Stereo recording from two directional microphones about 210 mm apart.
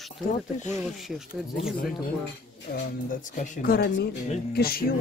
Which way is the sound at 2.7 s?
45° left (ahead or behind).